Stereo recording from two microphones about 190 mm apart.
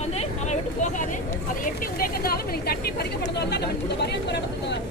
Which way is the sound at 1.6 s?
50° left (ahead or behind).